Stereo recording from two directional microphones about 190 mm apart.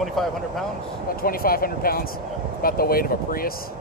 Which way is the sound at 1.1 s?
50° left (ahead or behind).